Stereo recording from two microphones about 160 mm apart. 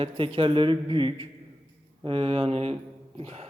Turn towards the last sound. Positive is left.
turn(degrees=-40)  # may be behind; listen again after turning